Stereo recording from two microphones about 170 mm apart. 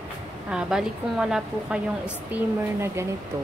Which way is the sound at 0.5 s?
5° right (ahead or behind).